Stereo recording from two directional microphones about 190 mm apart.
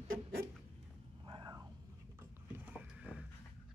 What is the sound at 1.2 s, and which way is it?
Whispering, 25° right (ahead or behind).